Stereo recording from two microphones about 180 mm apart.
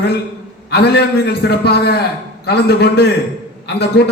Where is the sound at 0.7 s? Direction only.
65° left (ahead or behind).